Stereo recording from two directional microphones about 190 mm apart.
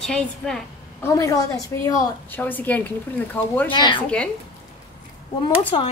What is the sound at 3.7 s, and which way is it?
Speech, 25° left (ahead or behind).